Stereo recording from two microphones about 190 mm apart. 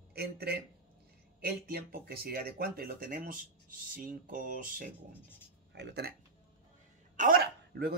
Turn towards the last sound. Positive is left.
turn(degrees=-50)  # may be behind; listen again after turning